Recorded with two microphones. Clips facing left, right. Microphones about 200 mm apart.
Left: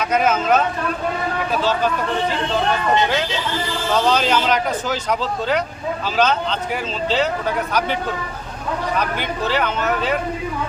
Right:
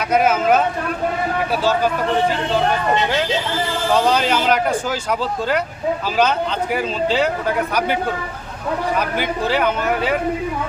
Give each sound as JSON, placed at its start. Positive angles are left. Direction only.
{"t": 0.1, "sound": "speech", "side_deg": -10}
{"t": 4.1, "sound": "speech", "side_deg": -10}
{"t": 7.7, "sound": "speech", "side_deg": -10}
{"t": 9.0, "sound": "speech", "side_deg": -10}